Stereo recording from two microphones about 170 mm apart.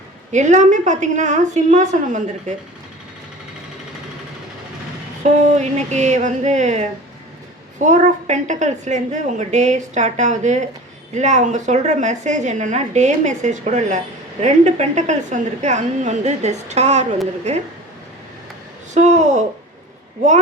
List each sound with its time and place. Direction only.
0.3 s a woman's voice: 45° right (ahead or behind)
5.2 s a woman's voice: 40° right (ahead or behind)
7.9 s a woman's voice: 45° right (ahead or behind)
18.9 s a woman's voice: 45° right (ahead or behind)